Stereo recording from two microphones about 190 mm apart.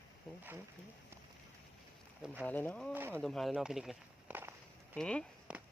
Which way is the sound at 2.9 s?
10° right (ahead or behind).